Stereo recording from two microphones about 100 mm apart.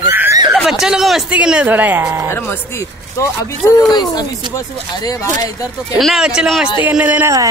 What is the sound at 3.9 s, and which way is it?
Speech, 40° left (ahead or behind).